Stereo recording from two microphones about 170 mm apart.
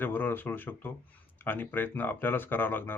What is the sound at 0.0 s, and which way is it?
Speech, 10° left (ahead or behind).